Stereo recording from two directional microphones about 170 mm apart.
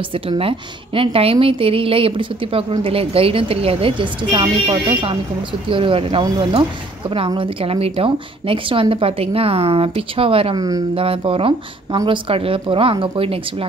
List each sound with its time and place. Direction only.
0.1 s a woman's voice: 30° right (ahead or behind)